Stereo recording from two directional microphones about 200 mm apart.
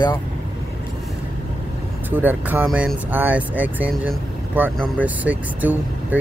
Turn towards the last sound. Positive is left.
turn(degrees=-10)  # may be behind; listen again after turning